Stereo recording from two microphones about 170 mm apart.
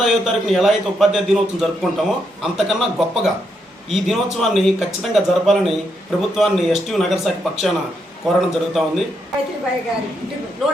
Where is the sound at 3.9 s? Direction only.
Centre (ahead or behind).